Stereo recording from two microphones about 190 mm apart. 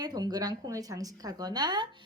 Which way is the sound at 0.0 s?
20° right (ahead or behind).